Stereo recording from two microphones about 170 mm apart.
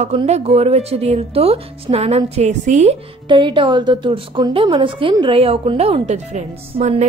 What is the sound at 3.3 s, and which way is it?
A woman's voice, 30° right (ahead or behind).